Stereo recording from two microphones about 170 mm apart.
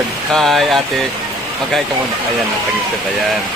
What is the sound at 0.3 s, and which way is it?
Speech, centre (ahead or behind).